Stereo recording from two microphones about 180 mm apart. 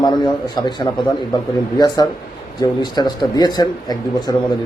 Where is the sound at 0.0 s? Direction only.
25° left (ahead or behind).